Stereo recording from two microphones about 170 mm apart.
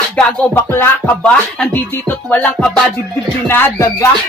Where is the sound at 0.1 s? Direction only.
10° left (ahead or behind).